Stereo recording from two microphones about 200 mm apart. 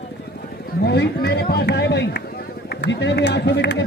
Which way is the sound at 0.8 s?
55° left (ahead or behind).